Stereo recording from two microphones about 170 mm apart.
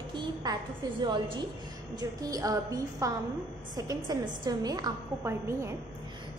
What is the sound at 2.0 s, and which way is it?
A woman's voice, 20° right (ahead or behind).